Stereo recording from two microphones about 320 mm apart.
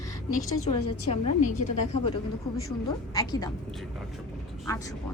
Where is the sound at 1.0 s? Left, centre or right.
Left.